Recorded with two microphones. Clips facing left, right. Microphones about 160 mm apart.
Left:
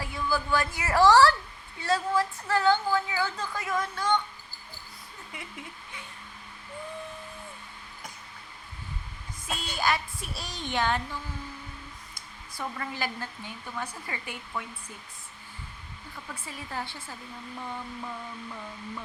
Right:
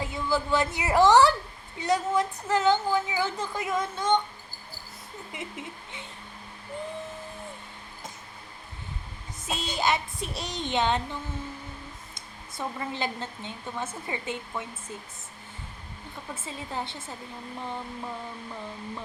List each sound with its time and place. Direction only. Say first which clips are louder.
0.0 s a woman's voice: right 2 dB; 20° right (ahead or behind)
5.3 s speech: right 4 dB; 20° right (ahead or behind)
9.5 s speech: right 2 dB; 20° right (ahead or behind)
16.3 s speech: right 3 dB; 25° right (ahead or behind)